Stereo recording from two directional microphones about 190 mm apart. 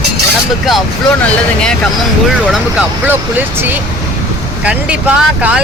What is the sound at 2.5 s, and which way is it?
Speech, 5° right (ahead or behind).